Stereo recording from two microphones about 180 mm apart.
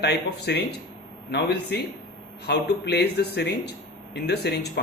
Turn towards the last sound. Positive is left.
turn(degrees=65)  # may be behind; listen again after turning